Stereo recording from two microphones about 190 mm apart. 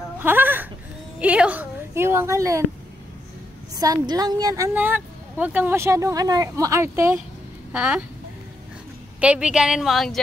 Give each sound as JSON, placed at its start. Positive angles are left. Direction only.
{"t": 0.2, "sound": "a woman's voice", "side_deg": -10}
{"t": 3.7, "sound": "speech", "side_deg": -20}
{"t": 9.2, "sound": "a woman's voice", "side_deg": -5}